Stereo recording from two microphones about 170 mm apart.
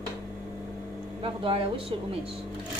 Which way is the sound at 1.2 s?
35° right (ahead or behind).